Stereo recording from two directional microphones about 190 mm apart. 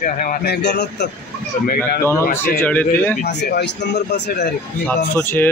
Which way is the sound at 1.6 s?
45° left (ahead or behind).